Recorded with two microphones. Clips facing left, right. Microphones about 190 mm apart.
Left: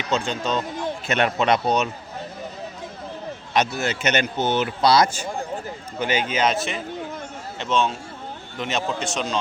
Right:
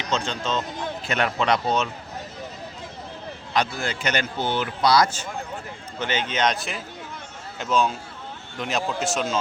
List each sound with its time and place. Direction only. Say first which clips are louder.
0.3 s speech: left 2 dB; 15° left (ahead or behind)
3.5 s speech: left 3 dB; 20° left (ahead or behind)
6.0 s a man's voice: left 2 dB; 10° left (ahead or behind)